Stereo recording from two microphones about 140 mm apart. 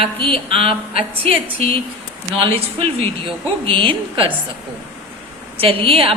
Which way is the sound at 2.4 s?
45° right (ahead or behind).